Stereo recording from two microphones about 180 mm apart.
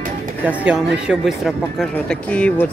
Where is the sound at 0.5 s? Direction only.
5° right (ahead or behind).